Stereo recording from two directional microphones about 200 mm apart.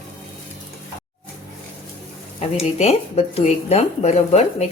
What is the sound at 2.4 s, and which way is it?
Speech, 30° left (ahead or behind).